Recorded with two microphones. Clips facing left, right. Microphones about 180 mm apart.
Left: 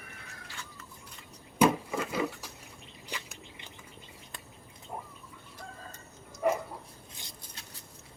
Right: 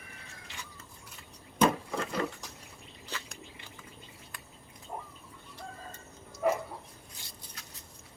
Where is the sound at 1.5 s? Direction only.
5° left (ahead or behind).